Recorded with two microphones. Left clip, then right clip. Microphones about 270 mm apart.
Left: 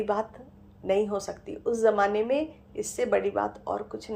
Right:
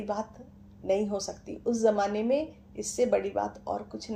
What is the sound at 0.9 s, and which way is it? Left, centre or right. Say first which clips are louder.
Speech: left 2 dB; left.